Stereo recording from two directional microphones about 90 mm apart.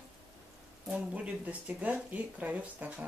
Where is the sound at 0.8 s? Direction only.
15° right (ahead or behind).